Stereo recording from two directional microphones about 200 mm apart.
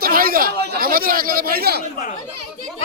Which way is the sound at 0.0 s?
45° right (ahead or behind).